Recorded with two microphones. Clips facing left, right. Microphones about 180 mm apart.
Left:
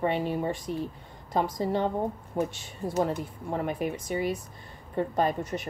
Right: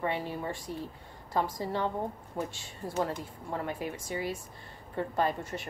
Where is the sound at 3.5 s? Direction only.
20° left (ahead or behind).